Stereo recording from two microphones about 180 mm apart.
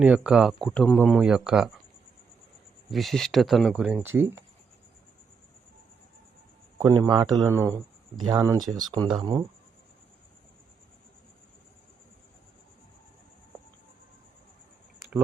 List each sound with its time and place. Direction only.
0.0 s speech: 5° right (ahead or behind)
2.9 s speech: centre (ahead or behind)
6.7 s speech: 15° right (ahead or behind)